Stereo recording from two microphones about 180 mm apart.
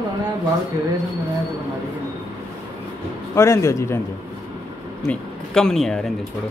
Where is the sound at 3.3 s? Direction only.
15° left (ahead or behind).